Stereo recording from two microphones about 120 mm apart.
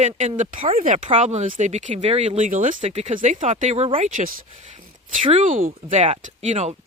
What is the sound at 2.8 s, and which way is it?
Speech, 60° right (ahead or behind).